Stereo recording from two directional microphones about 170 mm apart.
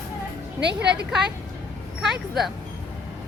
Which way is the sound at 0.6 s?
85° right.